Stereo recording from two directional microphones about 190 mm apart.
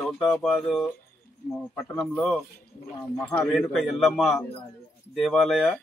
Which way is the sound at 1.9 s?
Centre (ahead or behind).